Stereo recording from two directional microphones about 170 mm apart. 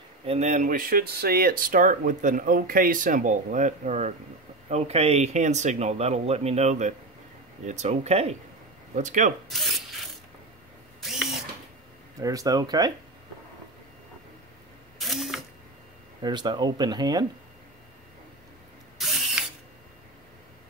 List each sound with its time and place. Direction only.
0.2 s speech: 40° right (ahead or behind)
9.5 s speech: centre (ahead or behind)
11.0 s ratchet: centre (ahead or behind)
12.2 s speech: 20° right (ahead or behind)
15.0 s camera: centre (ahead or behind)
16.2 s speech: 25° right (ahead or behind)
18.9 s ratchet: centre (ahead or behind)